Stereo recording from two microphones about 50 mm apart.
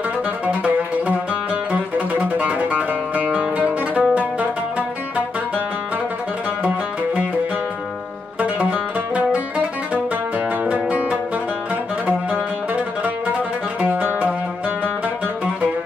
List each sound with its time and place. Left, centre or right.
0.5 s music: right
8.4 s music: right
13.7 s music: right